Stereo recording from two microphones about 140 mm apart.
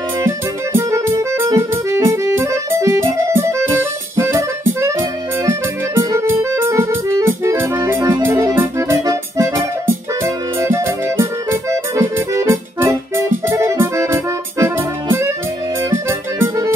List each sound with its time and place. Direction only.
0.7 s music: 20° right (ahead or behind)
10.2 s accordion: 20° right (ahead or behind)
15.9 s music: 15° right (ahead or behind)